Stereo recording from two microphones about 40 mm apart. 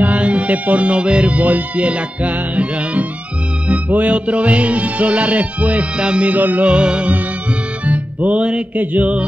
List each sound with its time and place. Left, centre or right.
0.0 s music: right
5.9 s music: right
6.2 s music: right
6.6 s music: right